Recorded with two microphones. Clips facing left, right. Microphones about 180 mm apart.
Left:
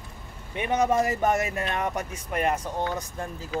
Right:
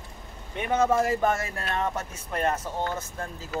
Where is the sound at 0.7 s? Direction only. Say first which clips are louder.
Even; 15° left (ahead or behind).